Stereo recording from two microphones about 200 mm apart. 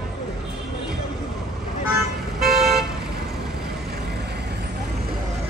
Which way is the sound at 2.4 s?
Centre (ahead or behind).